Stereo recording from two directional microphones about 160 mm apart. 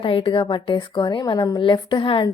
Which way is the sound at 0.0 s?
30° left (ahead or behind).